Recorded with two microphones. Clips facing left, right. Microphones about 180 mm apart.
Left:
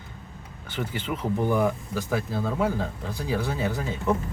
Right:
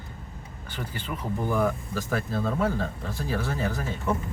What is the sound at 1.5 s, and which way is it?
Speech, 10° left (ahead or behind).